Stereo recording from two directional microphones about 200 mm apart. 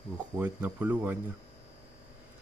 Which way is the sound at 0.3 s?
10° right (ahead or behind).